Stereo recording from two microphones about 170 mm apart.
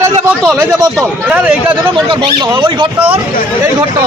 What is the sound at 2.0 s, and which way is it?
Speech, 30° right (ahead or behind).